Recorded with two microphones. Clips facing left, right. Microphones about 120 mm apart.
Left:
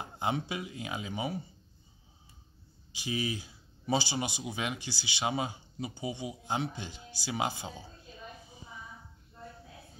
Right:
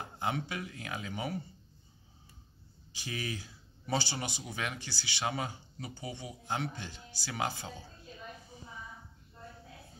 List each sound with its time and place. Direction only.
0.0 s speech: 15° left (ahead or behind)
2.9 s speech: 15° left (ahead or behind)